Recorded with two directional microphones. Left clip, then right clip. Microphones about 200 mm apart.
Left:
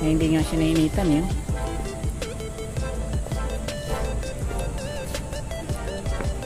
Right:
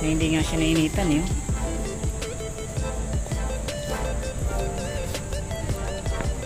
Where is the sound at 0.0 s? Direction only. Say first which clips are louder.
Left 2 dB; 25° left (ahead or behind).